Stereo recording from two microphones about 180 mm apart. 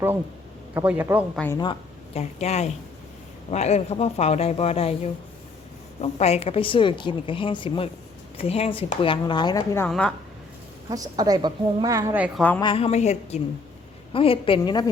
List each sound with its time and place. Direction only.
0.7 s a man's voice: 10° right (ahead or behind)
1.5 s a woman's voice: 30° left (ahead or behind)
10.8 s a woman's voice: 20° right (ahead or behind)
12.5 s a woman's voice: 30° left (ahead or behind)